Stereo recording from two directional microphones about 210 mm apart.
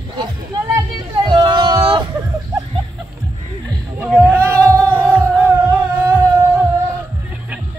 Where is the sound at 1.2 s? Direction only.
20° right (ahead or behind).